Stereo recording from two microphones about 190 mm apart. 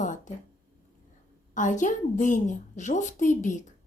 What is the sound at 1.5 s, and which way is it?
Speech, 40° left (ahead or behind).